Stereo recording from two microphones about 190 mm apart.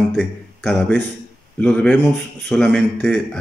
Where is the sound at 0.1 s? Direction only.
Centre (ahead or behind).